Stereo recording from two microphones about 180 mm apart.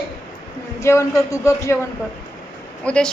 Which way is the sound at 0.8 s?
15° left (ahead or behind).